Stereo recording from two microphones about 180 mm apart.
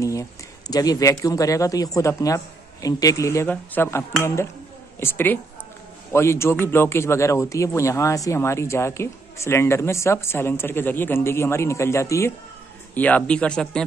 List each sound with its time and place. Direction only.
0.0 s speech: 15° left (ahead or behind)